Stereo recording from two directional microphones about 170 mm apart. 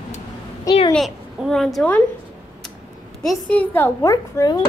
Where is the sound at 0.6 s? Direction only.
30° left (ahead or behind).